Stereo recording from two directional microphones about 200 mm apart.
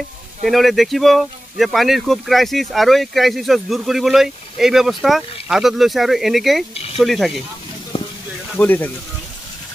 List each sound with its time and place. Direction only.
0.5 s speech: centre (ahead or behind)
7.9 s a sound: 30° left (ahead or behind)
8.5 s speech: 10° left (ahead or behind)